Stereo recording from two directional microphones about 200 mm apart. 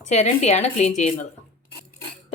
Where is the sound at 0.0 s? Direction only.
35° left (ahead or behind).